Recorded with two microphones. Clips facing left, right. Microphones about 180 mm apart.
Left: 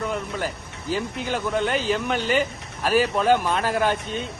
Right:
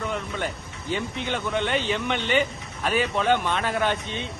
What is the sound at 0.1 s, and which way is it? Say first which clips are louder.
A man's voice: left 2 dB; 5° left (ahead or behind).